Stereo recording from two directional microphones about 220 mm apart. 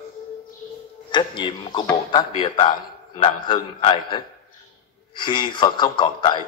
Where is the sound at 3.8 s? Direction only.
20° left (ahead or behind).